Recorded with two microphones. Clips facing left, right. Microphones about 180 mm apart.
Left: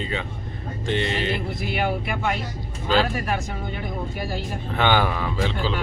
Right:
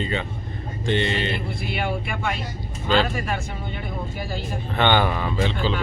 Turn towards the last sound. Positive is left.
turn(degrees=5)  # may be behind; listen again after turning